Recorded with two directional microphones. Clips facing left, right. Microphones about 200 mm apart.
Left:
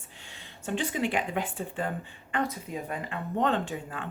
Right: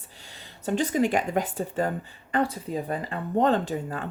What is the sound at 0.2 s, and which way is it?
Speech, 40° right (ahead or behind).